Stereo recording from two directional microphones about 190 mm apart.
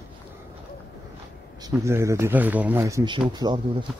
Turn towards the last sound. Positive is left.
turn(degrees=-20)  # may be behind; listen again after turning